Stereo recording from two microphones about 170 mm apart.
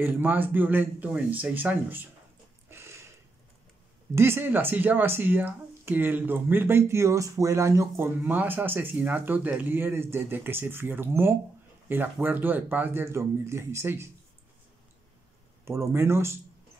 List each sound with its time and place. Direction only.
0.0 s speech: 10° right (ahead or behind)
2.7 s a sound: 15° right (ahead or behind)
4.1 s speech: 15° right (ahead or behind)
15.6 s speech: 15° right (ahead or behind)